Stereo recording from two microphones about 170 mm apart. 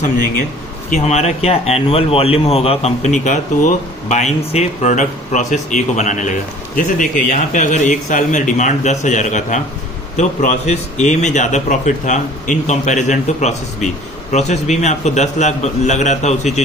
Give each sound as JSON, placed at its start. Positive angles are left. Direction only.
{"t": 0.9, "sound": "a man's voice", "side_deg": 45}